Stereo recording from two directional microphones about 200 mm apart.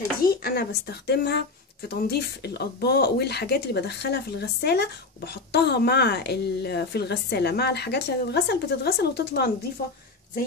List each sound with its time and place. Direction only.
0.4 s speech: 50° left (ahead or behind)